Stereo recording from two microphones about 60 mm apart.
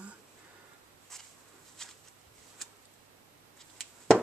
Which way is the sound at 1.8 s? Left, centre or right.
Centre.